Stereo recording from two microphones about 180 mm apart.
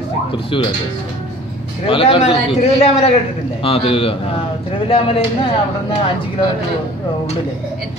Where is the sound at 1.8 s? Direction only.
30° left (ahead or behind).